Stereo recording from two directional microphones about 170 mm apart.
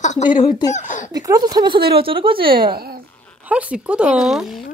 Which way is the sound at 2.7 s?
65° right (ahead or behind).